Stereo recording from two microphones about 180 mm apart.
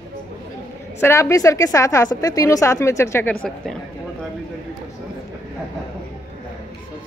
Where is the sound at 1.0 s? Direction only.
15° left (ahead or behind).